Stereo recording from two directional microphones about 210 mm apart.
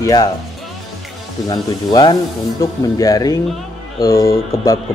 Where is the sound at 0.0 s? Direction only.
20° left (ahead or behind).